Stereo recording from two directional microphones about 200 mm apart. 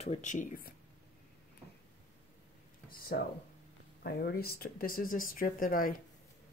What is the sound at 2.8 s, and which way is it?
Speech, 50° left (ahead or behind).